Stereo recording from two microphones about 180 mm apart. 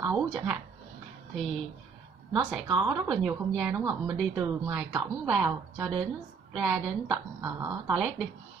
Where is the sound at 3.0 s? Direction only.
5° left (ahead or behind).